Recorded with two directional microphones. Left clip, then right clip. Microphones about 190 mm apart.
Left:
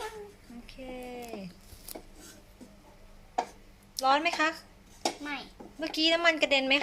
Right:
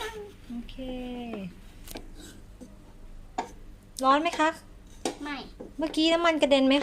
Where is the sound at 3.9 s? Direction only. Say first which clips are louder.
Right 2 dB; 20° right (ahead or behind).